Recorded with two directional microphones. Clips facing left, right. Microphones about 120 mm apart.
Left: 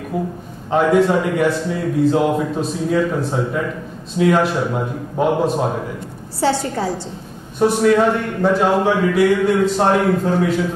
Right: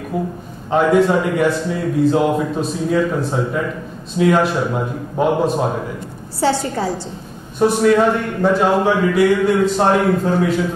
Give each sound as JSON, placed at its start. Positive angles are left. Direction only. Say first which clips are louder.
{"t": 0.7, "sound": "a man's voice", "louder": "right 1 dB", "side_deg": -25}
{"t": 6.4, "sound": "a man's voice", "louder": "right 1 dB", "side_deg": -25}